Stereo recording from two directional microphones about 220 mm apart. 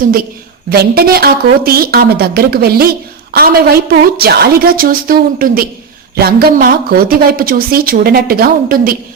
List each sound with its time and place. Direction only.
0.0 s a woman's voice: 40° right (ahead or behind)